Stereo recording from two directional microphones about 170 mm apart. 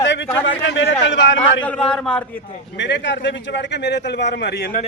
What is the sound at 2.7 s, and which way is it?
A man's voice, 90° left.